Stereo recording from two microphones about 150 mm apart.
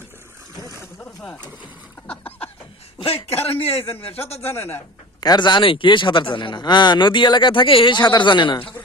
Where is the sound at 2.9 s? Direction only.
40° left (ahead or behind).